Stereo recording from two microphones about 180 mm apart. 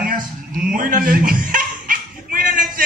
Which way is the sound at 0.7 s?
50° right (ahead or behind).